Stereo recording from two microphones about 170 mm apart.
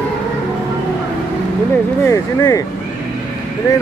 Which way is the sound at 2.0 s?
20° left (ahead or behind).